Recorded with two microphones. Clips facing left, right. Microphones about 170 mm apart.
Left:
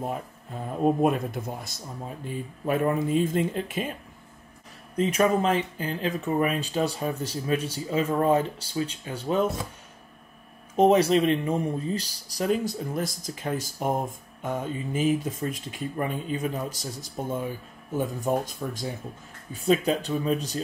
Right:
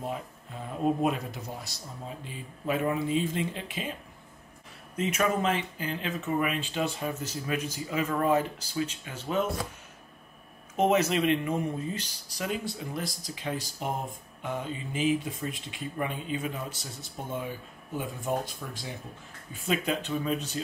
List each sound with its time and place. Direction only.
1.0 s speech: 50° left (ahead or behind)
4.9 s speech: 35° left (ahead or behind)
10.8 s speech: 35° left (ahead or behind)